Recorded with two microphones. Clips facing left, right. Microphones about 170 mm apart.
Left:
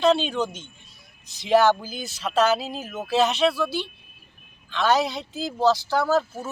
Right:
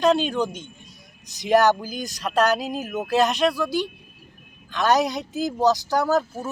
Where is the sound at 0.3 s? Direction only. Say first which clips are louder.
Right 2 dB; 10° right (ahead or behind).